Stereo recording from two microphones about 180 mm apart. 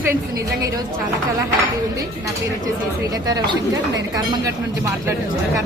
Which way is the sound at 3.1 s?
20° right (ahead or behind).